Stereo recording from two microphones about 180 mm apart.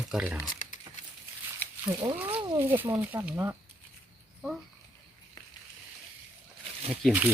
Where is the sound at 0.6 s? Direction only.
45° left (ahead or behind).